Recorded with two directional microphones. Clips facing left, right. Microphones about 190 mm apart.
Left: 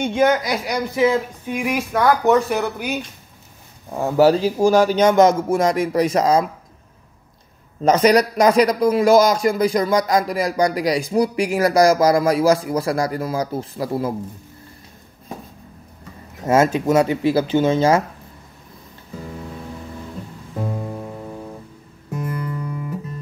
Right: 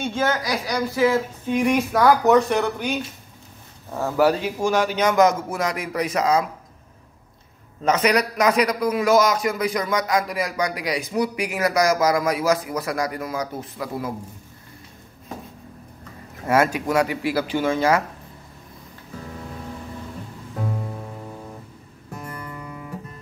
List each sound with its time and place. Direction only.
0.0 s speech: 20° left (ahead or behind)
4.2 s a man's voice: 30° left (ahead or behind)
7.8 s a man's voice: 35° left (ahead or behind)
16.4 s speech: 25° left (ahead or behind)
20.5 s music: 10° left (ahead or behind)